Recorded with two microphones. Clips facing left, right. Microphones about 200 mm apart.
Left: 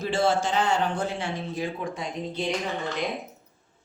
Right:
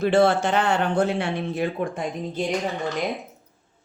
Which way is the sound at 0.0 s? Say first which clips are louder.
Right 6 dB; 60° right (ahead or behind).